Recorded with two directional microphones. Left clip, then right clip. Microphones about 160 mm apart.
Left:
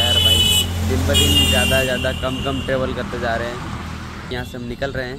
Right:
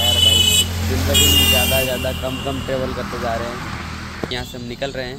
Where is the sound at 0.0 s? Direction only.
60° left (ahead or behind).